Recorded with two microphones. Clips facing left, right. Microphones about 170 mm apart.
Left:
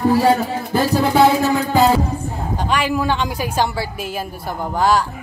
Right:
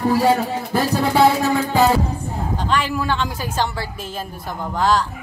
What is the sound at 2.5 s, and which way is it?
A woman's voice, 15° left (ahead or behind).